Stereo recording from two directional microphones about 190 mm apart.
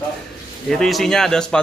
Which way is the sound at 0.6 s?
Centre (ahead or behind).